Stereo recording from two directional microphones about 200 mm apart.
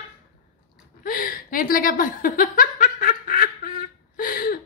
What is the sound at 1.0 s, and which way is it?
Chuckle, 45° left (ahead or behind).